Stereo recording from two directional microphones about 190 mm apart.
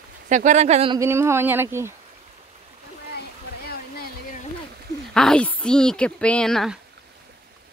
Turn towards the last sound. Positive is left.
turn(degrees=0)  # may be behind; listen again after turning